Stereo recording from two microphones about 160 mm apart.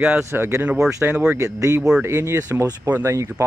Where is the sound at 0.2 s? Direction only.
15° right (ahead or behind).